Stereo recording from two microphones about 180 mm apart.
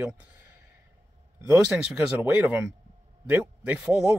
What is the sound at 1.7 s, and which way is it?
Speech, centre (ahead or behind).